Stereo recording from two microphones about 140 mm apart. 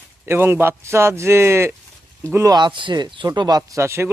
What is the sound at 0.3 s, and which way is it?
Speech, 15° right (ahead or behind).